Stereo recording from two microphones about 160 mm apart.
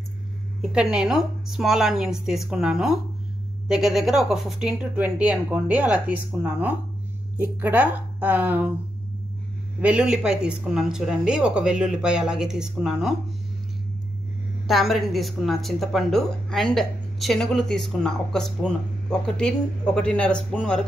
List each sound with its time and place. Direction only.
0.6 s speech: 5° right (ahead or behind)
9.8 s speech: 5° right (ahead or behind)
14.7 s speech: centre (ahead or behind)